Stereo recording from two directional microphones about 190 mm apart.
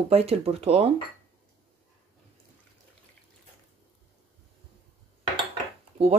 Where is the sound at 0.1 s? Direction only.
30° right (ahead or behind).